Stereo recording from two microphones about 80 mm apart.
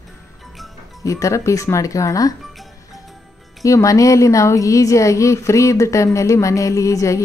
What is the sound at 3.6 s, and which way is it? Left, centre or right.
Speech, left.